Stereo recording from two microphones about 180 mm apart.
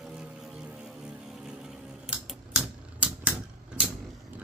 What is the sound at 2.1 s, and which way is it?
Typewriter, 5° right (ahead or behind).